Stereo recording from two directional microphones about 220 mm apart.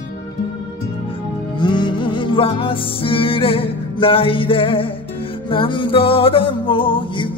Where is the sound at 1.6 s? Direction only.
20° left (ahead or behind).